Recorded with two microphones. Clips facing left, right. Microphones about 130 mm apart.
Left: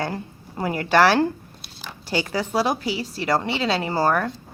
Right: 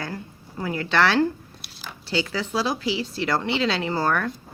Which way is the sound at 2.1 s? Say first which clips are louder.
Left 2 dB; 45° left (ahead or behind).